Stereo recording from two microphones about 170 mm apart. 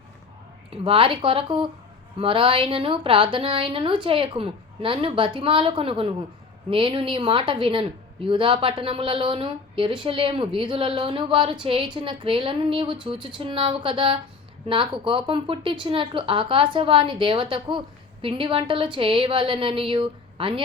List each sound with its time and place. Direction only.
0.7 s a woman's voice: 30° right (ahead or behind)